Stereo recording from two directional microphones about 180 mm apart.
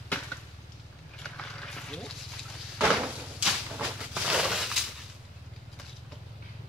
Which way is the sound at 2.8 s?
5° right (ahead or behind).